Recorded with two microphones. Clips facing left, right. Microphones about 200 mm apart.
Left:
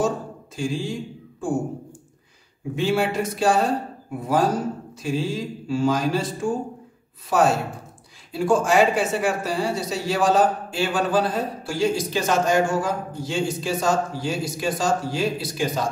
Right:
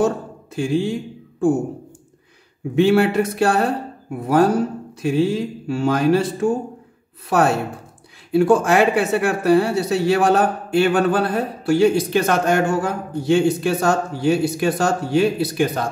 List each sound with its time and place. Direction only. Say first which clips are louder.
0.6 s speech: right 6 dB; 60° right (ahead or behind)
2.7 s speech: right 7 dB; 60° right (ahead or behind)